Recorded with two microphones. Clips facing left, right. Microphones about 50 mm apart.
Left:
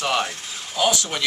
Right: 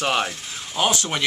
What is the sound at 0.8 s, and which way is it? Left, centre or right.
Speech, right.